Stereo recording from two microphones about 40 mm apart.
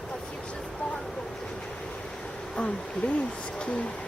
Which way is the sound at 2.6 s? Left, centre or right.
Left.